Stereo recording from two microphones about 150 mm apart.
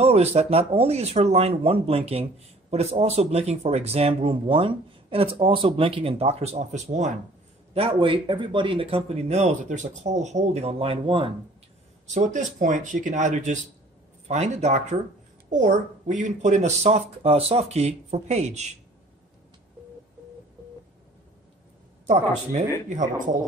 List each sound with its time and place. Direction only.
0.0 s speech: 45° right (ahead or behind)
7.7 s speech: 40° right (ahead or behind)
12.1 s speech: 55° right (ahead or behind)
22.5 s speech: 55° right (ahead or behind)